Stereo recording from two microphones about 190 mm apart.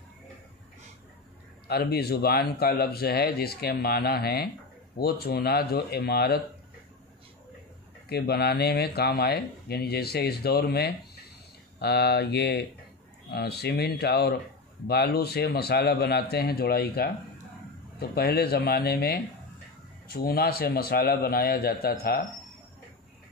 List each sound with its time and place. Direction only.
1.7 s speech: 55° left (ahead or behind)
8.1 s speech: 60° left (ahead or behind)